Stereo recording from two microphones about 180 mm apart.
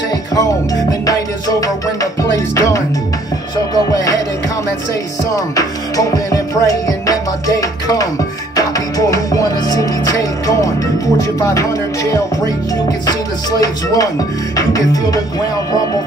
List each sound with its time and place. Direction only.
2.0 s music: 20° left (ahead or behind)
3.7 s speech: 20° left (ahead or behind)
5.3 s music: 20° left (ahead or behind)